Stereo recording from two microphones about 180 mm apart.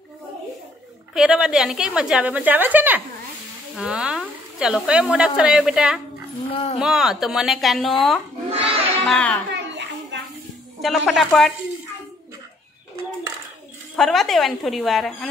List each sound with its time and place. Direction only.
1.1 s speech: 5° right (ahead or behind)
6.5 s speech: 35° left (ahead or behind)
6.8 s speech: centre (ahead or behind)
8.5 s a sound: 35° right (ahead or behind)
9.0 s speech: 5° left (ahead or behind)
9.5 s a sound: 75° right (ahead or behind)
10.8 s speech: centre (ahead or behind)
13.9 s speech: centre (ahead or behind)